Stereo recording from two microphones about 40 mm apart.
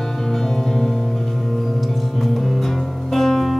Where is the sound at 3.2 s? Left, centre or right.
Centre.